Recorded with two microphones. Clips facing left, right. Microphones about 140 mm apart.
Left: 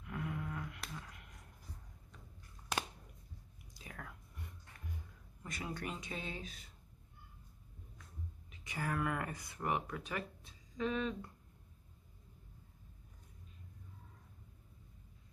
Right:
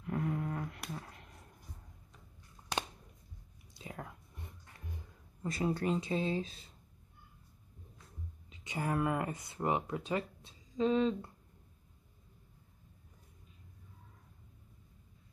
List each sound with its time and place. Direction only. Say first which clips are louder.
0.0 s a sound: right 7 dB; 40° right (ahead or behind)
3.7 s whispering: right 5 dB; 25° right (ahead or behind)
5.4 s speech: right 10 dB; 30° right (ahead or behind)
8.5 s speech: right 4 dB; 25° right (ahead or behind)